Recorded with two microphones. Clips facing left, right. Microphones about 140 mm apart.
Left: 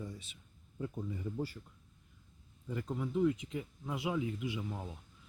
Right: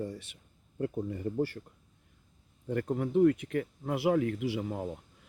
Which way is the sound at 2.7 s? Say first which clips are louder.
Right 7 dB; 60° right (ahead or behind).